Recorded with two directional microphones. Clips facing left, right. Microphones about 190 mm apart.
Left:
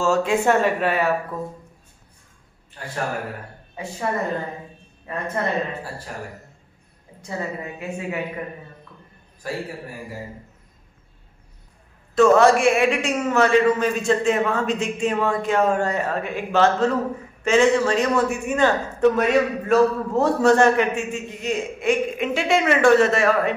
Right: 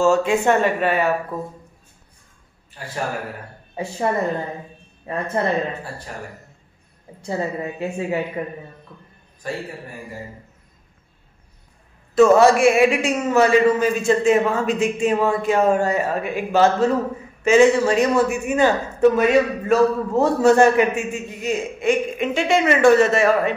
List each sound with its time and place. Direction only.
0.0 s speech: centre (ahead or behind)
3.8 s a woman's voice: 30° right (ahead or behind)
5.4 s a woman's voice: 30° right (ahead or behind)
7.2 s a woman's voice: 30° right (ahead or behind)
9.4 s speech: 5° left (ahead or behind)
12.2 s a man's voice: 5° right (ahead or behind)